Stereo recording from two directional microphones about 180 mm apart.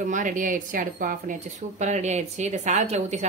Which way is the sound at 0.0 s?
45° right (ahead or behind).